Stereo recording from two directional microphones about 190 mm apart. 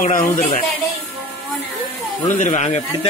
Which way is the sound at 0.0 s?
45° left (ahead or behind).